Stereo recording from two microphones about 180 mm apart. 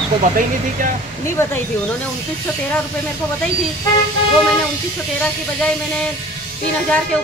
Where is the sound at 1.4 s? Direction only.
15° left (ahead or behind).